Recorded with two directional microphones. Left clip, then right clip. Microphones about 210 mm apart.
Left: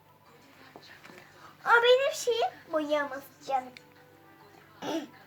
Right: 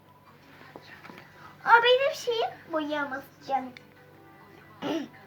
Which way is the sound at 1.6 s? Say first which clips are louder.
Right 2 dB; 20° left (ahead or behind).